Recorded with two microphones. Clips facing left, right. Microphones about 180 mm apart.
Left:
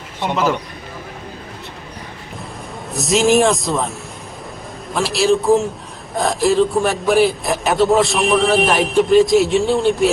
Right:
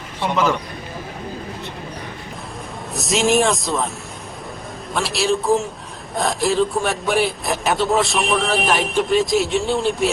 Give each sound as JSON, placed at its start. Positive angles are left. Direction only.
{"t": 2.9, "sound": "a man's voice", "side_deg": 0}
{"t": 4.9, "sound": "a man's voice", "side_deg": 0}